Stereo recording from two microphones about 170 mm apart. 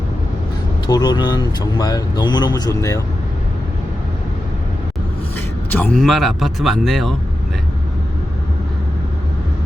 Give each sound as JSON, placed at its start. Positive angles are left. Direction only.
{"t": 0.9, "sound": "speech", "side_deg": 25}
{"t": 5.7, "sound": "speech", "side_deg": 10}